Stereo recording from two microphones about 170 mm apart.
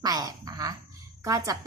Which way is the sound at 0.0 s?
20° right (ahead or behind).